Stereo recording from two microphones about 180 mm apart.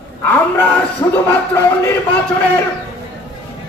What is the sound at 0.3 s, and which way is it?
Speech, 10° left (ahead or behind).